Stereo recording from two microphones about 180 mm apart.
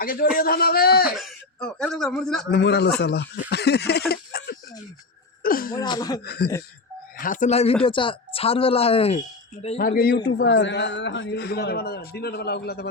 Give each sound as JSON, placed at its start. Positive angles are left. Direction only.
{"t": 0.0, "sound": "a man's voice", "side_deg": 55}
{"t": 1.1, "sound": "speech", "side_deg": 0}
{"t": 2.5, "sound": "speech", "side_deg": 70}
{"t": 3.5, "sound": "a sound", "side_deg": 65}
{"t": 5.7, "sound": "speech", "side_deg": 20}
{"t": 6.2, "sound": "speech", "side_deg": 60}
{"t": 7.2, "sound": "speech", "side_deg": 45}
{"t": 9.7, "sound": "speech", "side_deg": 55}
{"t": 10.2, "sound": "speech", "side_deg": 70}